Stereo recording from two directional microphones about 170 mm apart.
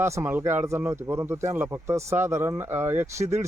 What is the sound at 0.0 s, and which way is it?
Speech, 15° right (ahead or behind).